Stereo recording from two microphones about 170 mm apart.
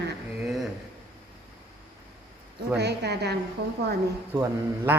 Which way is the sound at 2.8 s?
75° right (ahead or behind).